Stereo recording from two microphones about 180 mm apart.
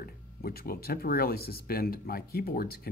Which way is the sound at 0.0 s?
55° left (ahead or behind).